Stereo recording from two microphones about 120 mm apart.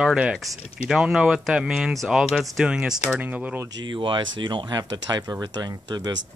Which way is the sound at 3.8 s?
40° right (ahead or behind).